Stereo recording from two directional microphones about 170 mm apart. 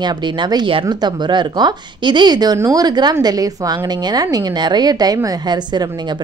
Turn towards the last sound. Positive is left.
turn(degrees=-25)  # may be behind; listen again after turning